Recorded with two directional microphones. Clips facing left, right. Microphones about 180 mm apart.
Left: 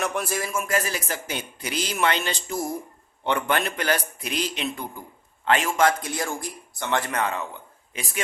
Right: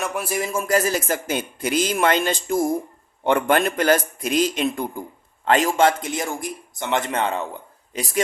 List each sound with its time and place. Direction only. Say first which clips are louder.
0.0 s a man's voice: right 1 dB; 5° right (ahead or behind)
0.5 s a man's voice: right 8 dB; 35° right (ahead or behind)
5.5 s a man's voice: right 4 dB; 35° right (ahead or behind)